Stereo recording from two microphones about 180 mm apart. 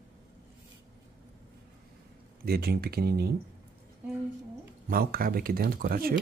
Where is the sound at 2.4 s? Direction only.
60° right (ahead or behind).